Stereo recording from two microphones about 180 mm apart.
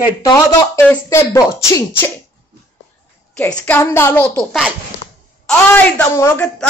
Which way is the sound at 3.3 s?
5° left (ahead or behind).